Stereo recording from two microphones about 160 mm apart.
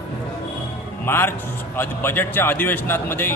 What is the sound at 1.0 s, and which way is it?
A man's voice, 15° left (ahead or behind).